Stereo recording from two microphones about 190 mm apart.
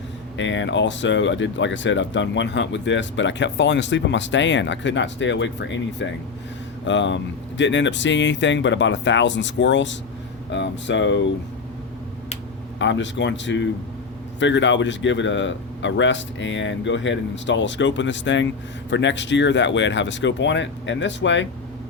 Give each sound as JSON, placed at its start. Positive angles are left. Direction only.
{"t": 0.3, "sound": "speech", "side_deg": 75}
{"t": 12.8, "sound": "speech", "side_deg": 70}